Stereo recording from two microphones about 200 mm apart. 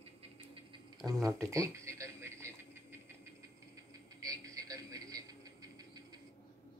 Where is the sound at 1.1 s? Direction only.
15° right (ahead or behind).